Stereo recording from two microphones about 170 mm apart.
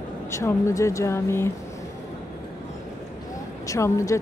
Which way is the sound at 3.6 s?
20° left (ahead or behind).